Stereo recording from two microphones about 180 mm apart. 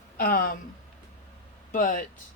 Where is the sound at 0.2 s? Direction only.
55° left (ahead or behind).